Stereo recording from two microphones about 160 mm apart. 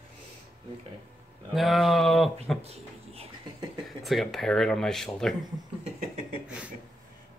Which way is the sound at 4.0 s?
Centre (ahead or behind).